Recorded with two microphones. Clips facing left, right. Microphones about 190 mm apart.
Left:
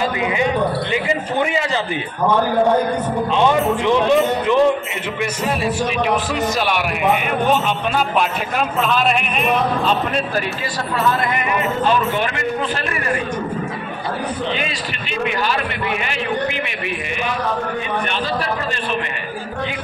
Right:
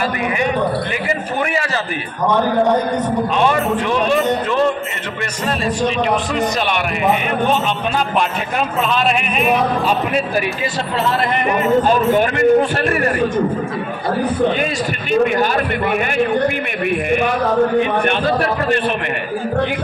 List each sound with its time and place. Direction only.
3.3 s music: 20° left (ahead or behind)
9.0 s speech: 5° right (ahead or behind)
12.1 s a man's voice: 45° right (ahead or behind)
17.1 s a man's voice: 55° right (ahead or behind)